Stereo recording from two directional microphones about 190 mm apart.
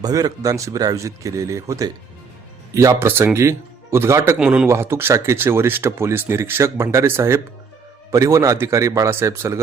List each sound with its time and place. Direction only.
0.0 s speech: 20° right (ahead or behind)